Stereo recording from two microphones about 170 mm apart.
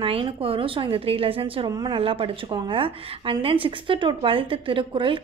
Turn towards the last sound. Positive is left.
turn(degrees=-30)  # may be behind; listen again after turning